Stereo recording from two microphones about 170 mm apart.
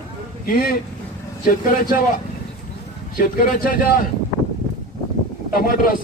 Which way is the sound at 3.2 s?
55° left (ahead or behind).